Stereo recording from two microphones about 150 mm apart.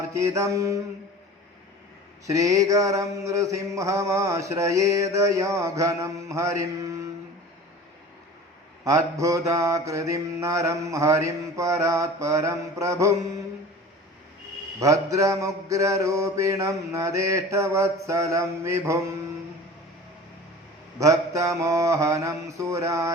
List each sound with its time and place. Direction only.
0.0 s mantra: 20° right (ahead or behind)
2.2 s mantra: 20° right (ahead or behind)
8.8 s mantra: 20° right (ahead or behind)
14.8 s mantra: 20° right (ahead or behind)
21.0 s mantra: 20° right (ahead or behind)